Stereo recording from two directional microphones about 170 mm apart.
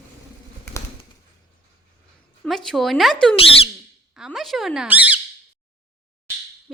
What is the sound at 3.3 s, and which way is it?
Speech, 35° left (ahead or behind).